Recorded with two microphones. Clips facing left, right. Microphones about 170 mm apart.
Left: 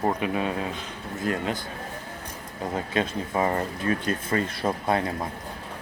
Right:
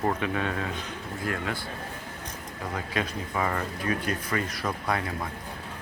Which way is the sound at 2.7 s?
25° left (ahead or behind).